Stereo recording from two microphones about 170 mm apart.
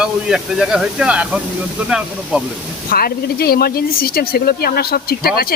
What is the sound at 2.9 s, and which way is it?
Speech, 60° left (ahead or behind).